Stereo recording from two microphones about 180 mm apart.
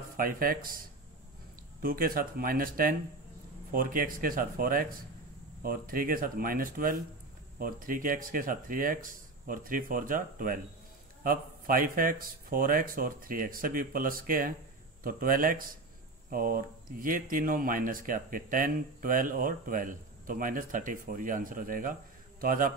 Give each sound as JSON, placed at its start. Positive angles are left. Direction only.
{"t": 0.2, "sound": "speech", "side_deg": -50}